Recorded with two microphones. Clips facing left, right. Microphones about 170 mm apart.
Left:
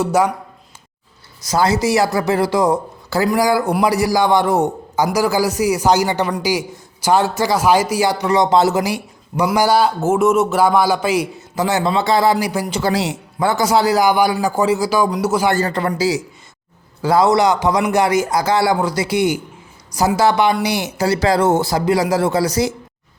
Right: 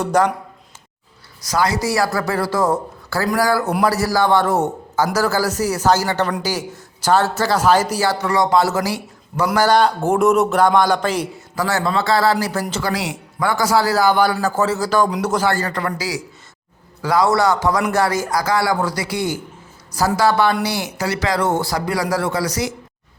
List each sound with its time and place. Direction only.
0.0 s a man's voice: 10° left (ahead or behind)
1.5 s a man's voice: 25° left (ahead or behind); by 11.3 s 10° left (ahead or behind)
11.3 s speech: 20° left (ahead or behind)
12.8 s a man's voice: 25° left (ahead or behind); by 15.4 s 10° left (ahead or behind)
15.4 s speech: 25° left (ahead or behind)